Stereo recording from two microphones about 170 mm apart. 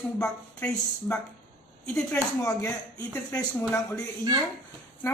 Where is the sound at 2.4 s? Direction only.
15° left (ahead or behind).